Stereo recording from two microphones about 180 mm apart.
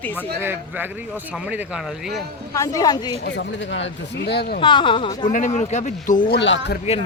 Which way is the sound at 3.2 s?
70° left (ahead or behind).